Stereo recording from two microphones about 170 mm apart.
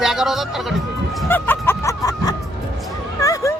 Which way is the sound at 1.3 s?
10° left (ahead or behind).